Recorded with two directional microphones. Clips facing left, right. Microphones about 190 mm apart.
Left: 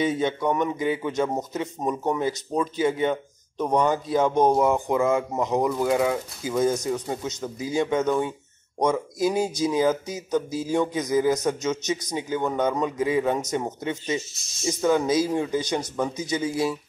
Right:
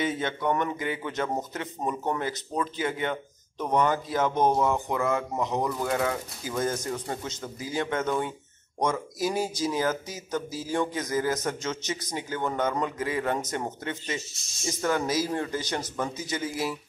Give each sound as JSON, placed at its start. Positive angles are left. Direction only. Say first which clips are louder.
{"t": 0.0, "sound": "speech", "louder": "left 5 dB", "side_deg": 15}